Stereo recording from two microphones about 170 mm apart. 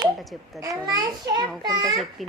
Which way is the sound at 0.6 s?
20° right (ahead or behind).